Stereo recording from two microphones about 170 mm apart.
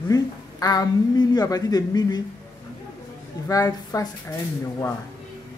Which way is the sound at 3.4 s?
20° left (ahead or behind).